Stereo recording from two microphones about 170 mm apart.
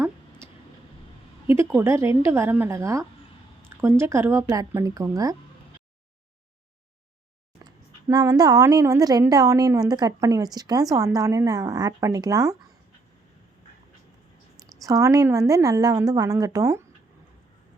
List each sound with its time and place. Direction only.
1.5 s a woman's voice: 15° right (ahead or behind)
7.6 s a woman's voice: 20° right (ahead or behind)
14.8 s a woman's voice: 20° right (ahead or behind)